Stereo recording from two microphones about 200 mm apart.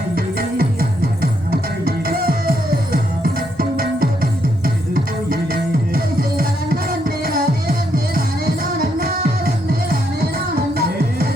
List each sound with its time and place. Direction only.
0.2 s music: 50° right (ahead or behind)